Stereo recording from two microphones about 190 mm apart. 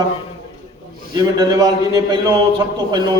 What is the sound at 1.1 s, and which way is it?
A man's voice, 20° right (ahead or behind).